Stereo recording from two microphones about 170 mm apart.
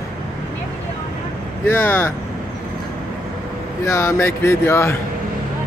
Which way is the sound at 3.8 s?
15° left (ahead or behind).